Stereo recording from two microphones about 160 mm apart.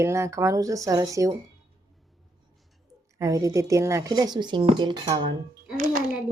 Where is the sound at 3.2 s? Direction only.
20° right (ahead or behind).